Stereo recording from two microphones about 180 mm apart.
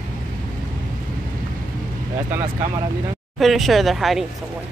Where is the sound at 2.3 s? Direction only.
15° right (ahead or behind).